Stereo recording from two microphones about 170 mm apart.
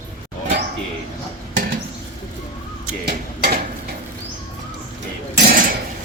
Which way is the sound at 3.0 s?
65° right (ahead or behind).